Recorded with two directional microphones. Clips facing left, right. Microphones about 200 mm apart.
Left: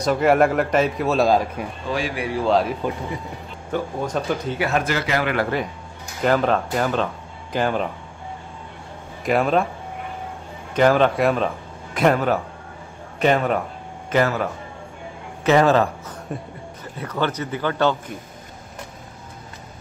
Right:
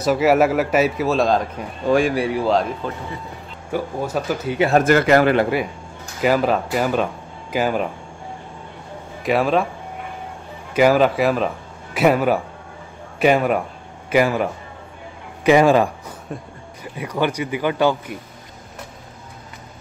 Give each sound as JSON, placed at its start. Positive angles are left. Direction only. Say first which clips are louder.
{"t": 0.0, "sound": "a man's voice", "louder": "right 1 dB", "side_deg": -5}
{"t": 1.9, "sound": "speech", "louder": "right 9 dB", "side_deg": -50}
{"t": 2.4, "sound": "a man's voice", "louder": "left 2 dB", "side_deg": 0}
{"t": 3.7, "sound": "a man's voice", "louder": "right 1 dB", "side_deg": -5}
{"t": 4.7, "sound": "speech", "louder": "right 11 dB", "side_deg": -50}
{"t": 6.2, "sound": "a man's voice", "louder": "right 1 dB", "side_deg": -5}
{"t": 9.2, "sound": "a man's voice", "louder": "right 1 dB", "side_deg": 0}
{"t": 10.7, "sound": "a man's voice", "louder": "right 2 dB", "side_deg": -5}
{"t": 16.3, "sound": "a man's voice", "louder": "left 1 dB", "side_deg": 0}
{"t": 16.8, "sound": "a man's voice", "louder": "right 3 dB", "side_deg": -10}